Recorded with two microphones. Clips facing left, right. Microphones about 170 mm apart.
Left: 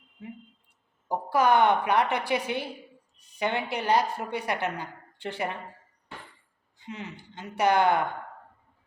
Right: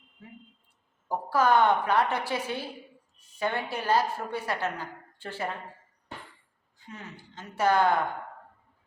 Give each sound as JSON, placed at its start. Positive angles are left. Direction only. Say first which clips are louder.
{"t": 1.0, "sound": "a woman's voice", "louder": "left 1 dB", "side_deg": 15}
{"t": 6.7, "sound": "a woman's voice", "louder": "left 5 dB", "side_deg": 20}